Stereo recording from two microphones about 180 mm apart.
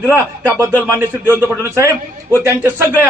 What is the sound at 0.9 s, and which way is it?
Speech, 15° right (ahead or behind).